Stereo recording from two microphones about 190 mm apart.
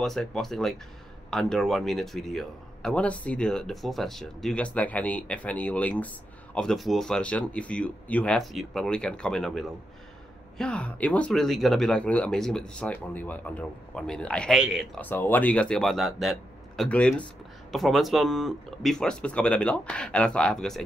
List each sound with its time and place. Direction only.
0.0 s speech: centre (ahead or behind)